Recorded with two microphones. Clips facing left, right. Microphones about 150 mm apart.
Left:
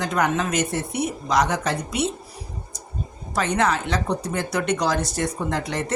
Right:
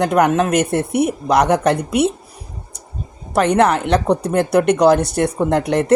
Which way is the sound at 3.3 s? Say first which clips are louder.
Right 8 dB; 60° right (ahead or behind).